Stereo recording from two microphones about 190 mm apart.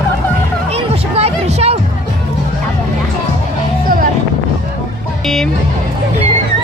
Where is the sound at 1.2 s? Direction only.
30° right (ahead or behind).